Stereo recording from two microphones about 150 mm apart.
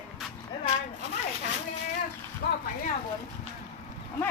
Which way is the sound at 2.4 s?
90° left.